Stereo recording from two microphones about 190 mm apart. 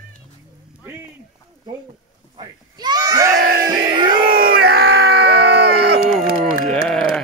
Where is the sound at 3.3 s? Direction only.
55° right (ahead or behind).